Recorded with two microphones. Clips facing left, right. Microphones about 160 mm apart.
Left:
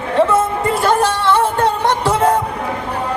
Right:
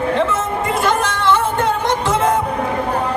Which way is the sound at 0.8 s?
35° left (ahead or behind).